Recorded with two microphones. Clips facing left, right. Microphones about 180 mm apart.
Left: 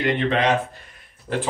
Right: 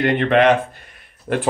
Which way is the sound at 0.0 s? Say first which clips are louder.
Right 6 dB; 60° right (ahead or behind).